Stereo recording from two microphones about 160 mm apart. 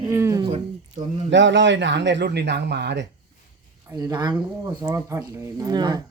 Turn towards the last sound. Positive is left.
turn(degrees=-25)  # may be behind; listen again after turning